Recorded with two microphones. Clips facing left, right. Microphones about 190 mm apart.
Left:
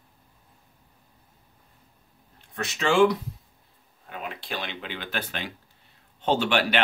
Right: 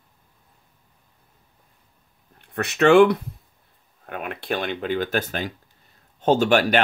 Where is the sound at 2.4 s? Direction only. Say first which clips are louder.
Right 9 dB; 60° right (ahead or behind).